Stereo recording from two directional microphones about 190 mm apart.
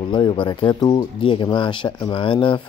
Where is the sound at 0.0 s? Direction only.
25° left (ahead or behind).